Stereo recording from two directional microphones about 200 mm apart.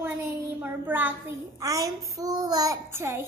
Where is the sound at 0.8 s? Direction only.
10° right (ahead or behind).